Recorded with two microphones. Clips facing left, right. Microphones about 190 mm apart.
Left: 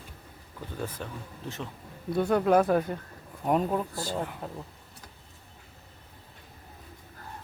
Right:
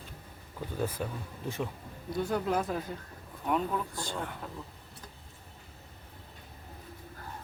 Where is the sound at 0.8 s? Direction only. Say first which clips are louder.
Right 3 dB; 10° right (ahead or behind).